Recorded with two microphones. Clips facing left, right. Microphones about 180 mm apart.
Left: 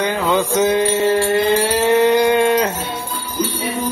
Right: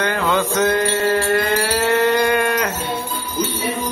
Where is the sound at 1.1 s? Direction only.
20° left (ahead or behind).